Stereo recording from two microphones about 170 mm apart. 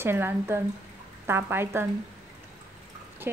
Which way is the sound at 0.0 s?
15° right (ahead or behind).